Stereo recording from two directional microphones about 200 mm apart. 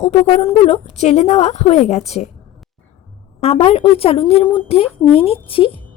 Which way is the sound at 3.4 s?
30° left (ahead or behind).